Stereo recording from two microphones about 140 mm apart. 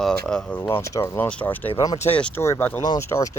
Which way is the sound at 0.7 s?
20° left (ahead or behind).